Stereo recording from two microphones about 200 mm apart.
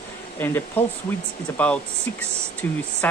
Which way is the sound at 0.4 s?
10° left (ahead or behind).